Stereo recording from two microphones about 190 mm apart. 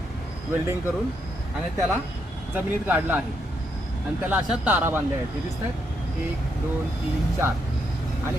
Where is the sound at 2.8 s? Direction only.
10° right (ahead or behind).